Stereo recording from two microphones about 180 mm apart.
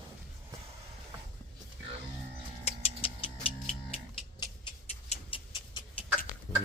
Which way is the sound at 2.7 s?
35° left (ahead or behind).